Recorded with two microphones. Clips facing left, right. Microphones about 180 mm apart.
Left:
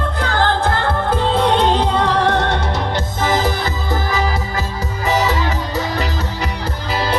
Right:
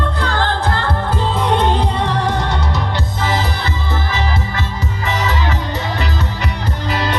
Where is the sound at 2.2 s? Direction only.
50° left (ahead or behind).